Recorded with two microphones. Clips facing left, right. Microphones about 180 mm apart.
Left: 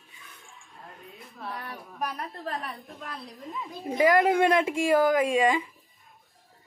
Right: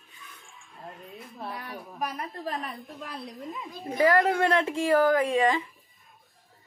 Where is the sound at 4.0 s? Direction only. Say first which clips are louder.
Left 1 dB; 15° left (ahead or behind).